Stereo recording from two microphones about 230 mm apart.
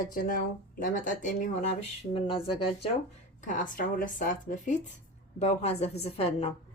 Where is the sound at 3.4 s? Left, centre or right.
Left.